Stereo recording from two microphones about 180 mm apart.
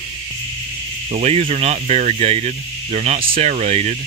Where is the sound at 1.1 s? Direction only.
35° right (ahead or behind).